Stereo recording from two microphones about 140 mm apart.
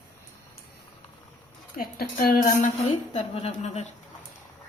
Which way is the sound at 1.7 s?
85° left.